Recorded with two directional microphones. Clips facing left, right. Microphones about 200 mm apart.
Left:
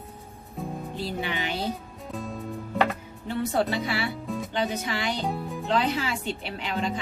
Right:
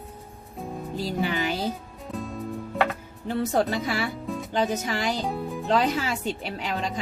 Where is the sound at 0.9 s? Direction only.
40° right (ahead or behind).